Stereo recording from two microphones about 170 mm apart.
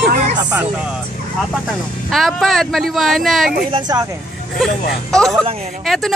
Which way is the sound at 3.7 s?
25° right (ahead or behind).